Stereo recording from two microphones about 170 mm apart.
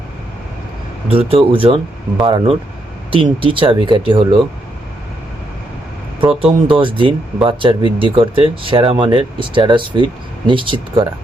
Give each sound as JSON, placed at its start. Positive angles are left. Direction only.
{"t": 1.0, "sound": "speech", "side_deg": -35}
{"t": 6.1, "sound": "speech", "side_deg": -30}